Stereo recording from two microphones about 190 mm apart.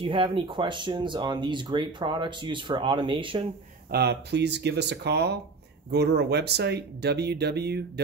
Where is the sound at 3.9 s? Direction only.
60° right (ahead or behind).